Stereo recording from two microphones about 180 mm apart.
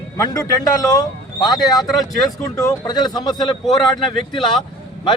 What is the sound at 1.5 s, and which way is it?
Speech, centre (ahead or behind).